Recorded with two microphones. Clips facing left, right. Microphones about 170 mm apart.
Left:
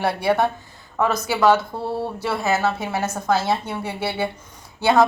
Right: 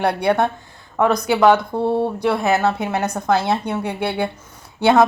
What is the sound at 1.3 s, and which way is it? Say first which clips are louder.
Speech: right 3 dB; 15° right (ahead or behind).